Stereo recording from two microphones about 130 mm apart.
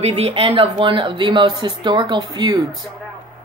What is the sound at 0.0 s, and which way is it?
Speech, 50° right (ahead or behind).